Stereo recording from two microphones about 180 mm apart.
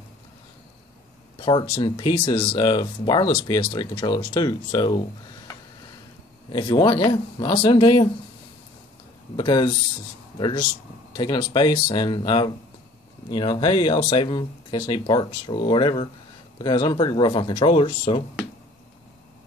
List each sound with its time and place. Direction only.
1.4 s speech: 25° left (ahead or behind)
6.5 s speech: 25° left (ahead or behind)
9.4 s speech: 25° left (ahead or behind)